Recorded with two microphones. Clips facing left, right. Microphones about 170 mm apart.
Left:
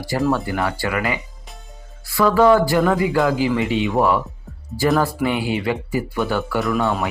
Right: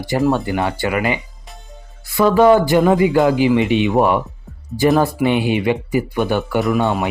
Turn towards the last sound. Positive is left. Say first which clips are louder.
# right 3 dB
turn(degrees=-20)  # may be behind; listen again after turning